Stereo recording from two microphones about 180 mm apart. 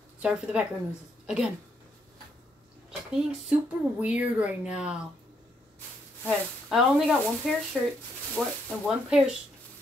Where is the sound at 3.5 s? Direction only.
5° right (ahead or behind).